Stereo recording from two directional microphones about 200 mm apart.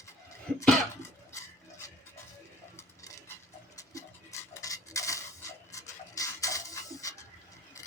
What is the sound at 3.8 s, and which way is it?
Cutlery, 15° left (ahead or behind).